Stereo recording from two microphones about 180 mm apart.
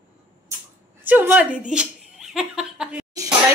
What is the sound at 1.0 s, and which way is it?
A woman's voice, 10° right (ahead or behind).